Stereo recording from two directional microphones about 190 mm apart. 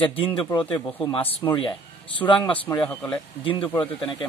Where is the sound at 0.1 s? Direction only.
30° left (ahead or behind).